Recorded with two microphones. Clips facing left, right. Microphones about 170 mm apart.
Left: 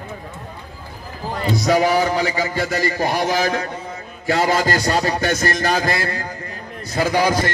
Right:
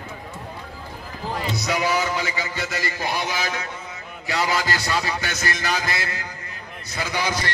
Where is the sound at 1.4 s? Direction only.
40° left (ahead or behind).